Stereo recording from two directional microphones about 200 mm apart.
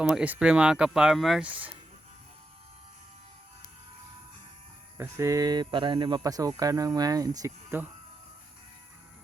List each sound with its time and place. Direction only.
0.0 s speech: 5° right (ahead or behind)
4.9 s speech: 15° right (ahead or behind)